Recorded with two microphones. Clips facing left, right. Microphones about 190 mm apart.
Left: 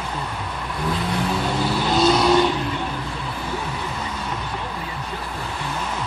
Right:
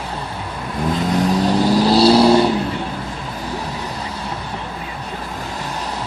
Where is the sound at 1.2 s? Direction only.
40° right (ahead or behind).